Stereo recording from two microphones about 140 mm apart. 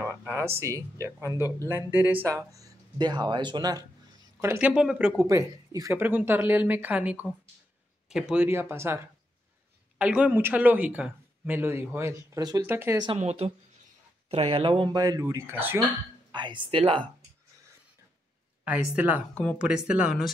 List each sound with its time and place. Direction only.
0.4 s speech: 20° right (ahead or behind)
4.4 s speech: 15° right (ahead or behind)
5.1 s speech: 20° right (ahead or behind); by 8.5 s 5° right (ahead or behind)
8.5 s speech: 15° right (ahead or behind)
12.6 s speech: 15° right (ahead or behind)
12.9 s speech: 30° right (ahead or behind)
13.2 s speech: 50° right (ahead or behind); by 15.8 s 15° right (ahead or behind)
16.3 s speech: 35° right (ahead or behind)
18.6 s speech: 10° right (ahead or behind)